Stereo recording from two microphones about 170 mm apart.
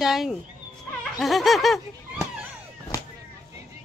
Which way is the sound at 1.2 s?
Centre (ahead or behind).